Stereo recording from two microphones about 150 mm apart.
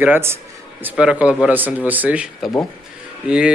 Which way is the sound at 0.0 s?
15° right (ahead or behind).